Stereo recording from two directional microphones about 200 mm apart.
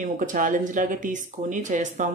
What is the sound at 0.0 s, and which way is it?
A woman's voice, 40° right (ahead or behind).